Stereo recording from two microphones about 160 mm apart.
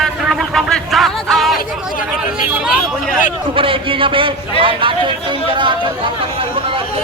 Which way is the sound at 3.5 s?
35° right (ahead or behind).